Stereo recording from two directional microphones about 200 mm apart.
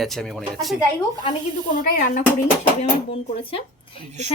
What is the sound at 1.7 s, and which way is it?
Speech, 45° left (ahead or behind).